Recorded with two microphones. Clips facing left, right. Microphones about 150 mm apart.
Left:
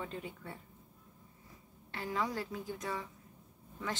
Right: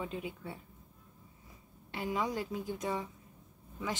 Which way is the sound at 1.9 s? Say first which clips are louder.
Right 2 dB; 15° right (ahead or behind).